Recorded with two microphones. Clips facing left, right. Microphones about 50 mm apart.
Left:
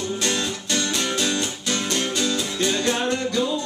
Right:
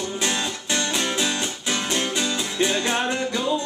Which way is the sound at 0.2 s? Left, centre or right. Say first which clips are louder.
Left 1 dB; centre.